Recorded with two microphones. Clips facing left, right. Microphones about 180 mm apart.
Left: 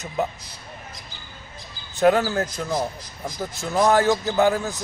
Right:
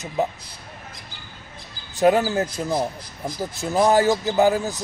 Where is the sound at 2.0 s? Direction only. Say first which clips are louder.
Right 1 dB; 15° right (ahead or behind).